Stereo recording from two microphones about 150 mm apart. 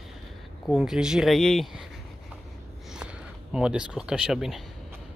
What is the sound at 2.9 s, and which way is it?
Speech, 5° right (ahead or behind).